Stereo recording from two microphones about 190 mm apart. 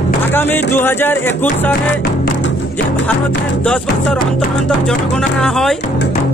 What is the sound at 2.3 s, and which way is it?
Music, 75° left (ahead or behind).